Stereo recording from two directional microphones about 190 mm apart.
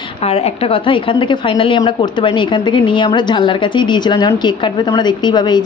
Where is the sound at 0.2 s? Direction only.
35° left (ahead or behind).